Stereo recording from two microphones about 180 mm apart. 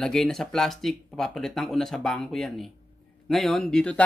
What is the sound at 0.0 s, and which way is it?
Speech, centre (ahead or behind).